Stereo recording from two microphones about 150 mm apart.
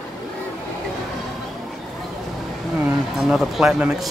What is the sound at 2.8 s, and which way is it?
Speech, 5° right (ahead or behind).